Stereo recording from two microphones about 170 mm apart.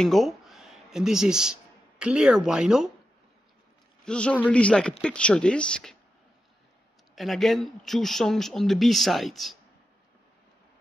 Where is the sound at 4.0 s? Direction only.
5° left (ahead or behind).